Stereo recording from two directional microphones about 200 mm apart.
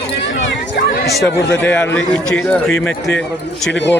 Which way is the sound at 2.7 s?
75° left (ahead or behind).